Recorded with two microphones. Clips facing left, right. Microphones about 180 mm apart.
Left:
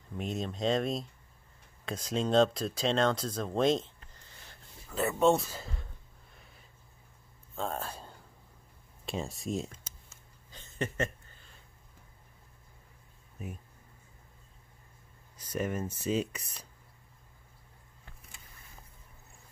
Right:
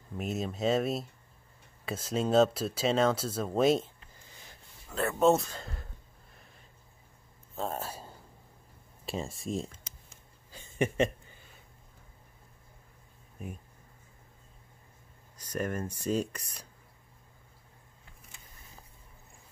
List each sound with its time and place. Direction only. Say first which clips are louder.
0.2 s a man's voice: right 1 dB; 5° right (ahead or behind)
7.5 s speech: right 1 dB; 5° right (ahead or behind)
10.5 s a sound: right 5 dB; 10° right (ahead or behind)
13.4 s speech: even; 5° left (ahead or behind)
15.3 s speech: even; 10° left (ahead or behind)